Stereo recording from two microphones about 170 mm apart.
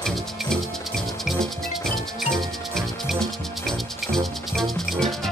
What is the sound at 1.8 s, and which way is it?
Music, centre (ahead or behind).